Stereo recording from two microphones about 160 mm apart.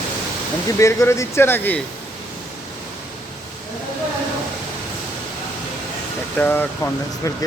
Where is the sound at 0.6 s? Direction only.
20° left (ahead or behind).